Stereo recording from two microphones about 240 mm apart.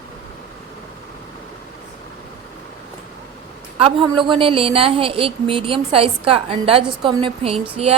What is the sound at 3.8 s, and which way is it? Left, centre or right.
A woman's voice, right.